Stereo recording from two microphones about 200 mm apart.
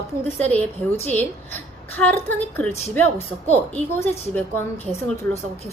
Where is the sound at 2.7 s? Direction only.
30° left (ahead or behind).